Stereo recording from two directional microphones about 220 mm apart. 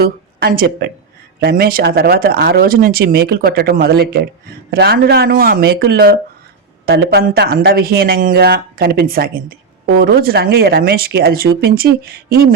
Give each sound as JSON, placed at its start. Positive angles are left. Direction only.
{"t": 0.0, "sound": "speech", "side_deg": -40}